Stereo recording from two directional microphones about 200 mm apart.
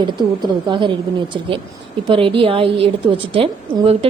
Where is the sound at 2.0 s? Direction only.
25° right (ahead or behind).